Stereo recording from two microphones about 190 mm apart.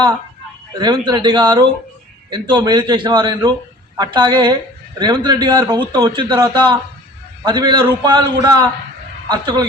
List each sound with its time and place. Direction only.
0.8 s a man's voice: 20° right (ahead or behind)